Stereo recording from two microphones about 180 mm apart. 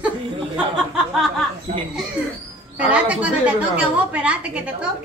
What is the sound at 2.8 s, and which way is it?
A woman's voice, 10° right (ahead or behind).